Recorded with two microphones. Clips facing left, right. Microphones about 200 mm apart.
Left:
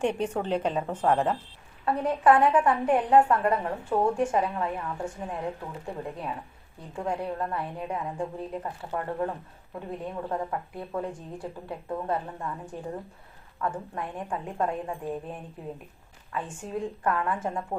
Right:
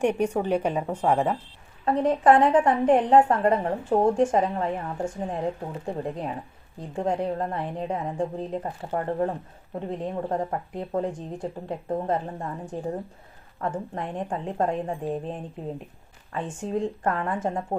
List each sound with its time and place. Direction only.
0.0 s a woman's voice: 10° right (ahead or behind)
1.8 s a woman's voice: 30° right (ahead or behind)